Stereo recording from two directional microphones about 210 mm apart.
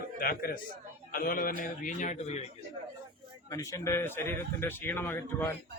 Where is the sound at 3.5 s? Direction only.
15° left (ahead or behind).